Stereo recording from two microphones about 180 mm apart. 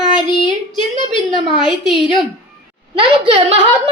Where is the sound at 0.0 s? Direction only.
25° left (ahead or behind).